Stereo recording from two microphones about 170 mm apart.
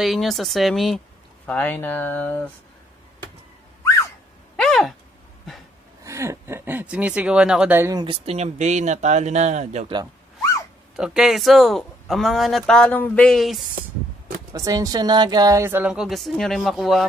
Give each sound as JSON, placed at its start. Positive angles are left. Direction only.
{"t": 0.0, "sound": "speech", "side_deg": 0}
{"t": 4.6, "sound": "a sound", "side_deg": 0}
{"t": 6.0, "sound": "speech", "side_deg": -15}
{"t": 7.9, "sound": "speech", "side_deg": -30}
{"t": 11.0, "sound": "speech", "side_deg": -5}
{"t": 14.5, "sound": "speech", "side_deg": -20}